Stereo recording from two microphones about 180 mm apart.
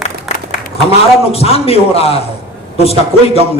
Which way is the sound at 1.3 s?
35° left (ahead or behind).